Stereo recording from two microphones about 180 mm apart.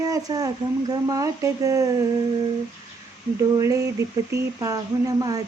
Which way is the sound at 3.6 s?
15° right (ahead or behind).